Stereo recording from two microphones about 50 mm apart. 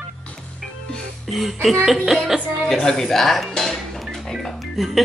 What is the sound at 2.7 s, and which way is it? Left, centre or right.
Speech, centre.